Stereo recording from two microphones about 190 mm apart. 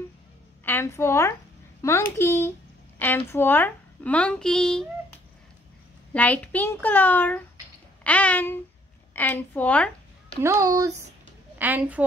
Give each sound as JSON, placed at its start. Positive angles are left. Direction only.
{"t": 0.7, "sound": "speech", "side_deg": 15}
{"t": 6.1, "sound": "speech", "side_deg": 10}
{"t": 10.4, "sound": "a woman's voice", "side_deg": -15}